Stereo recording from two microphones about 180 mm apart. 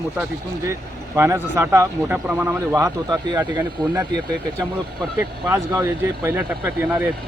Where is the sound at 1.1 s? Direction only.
15° right (ahead or behind).